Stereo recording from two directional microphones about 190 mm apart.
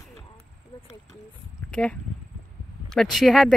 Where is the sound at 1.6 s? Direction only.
5° left (ahead or behind).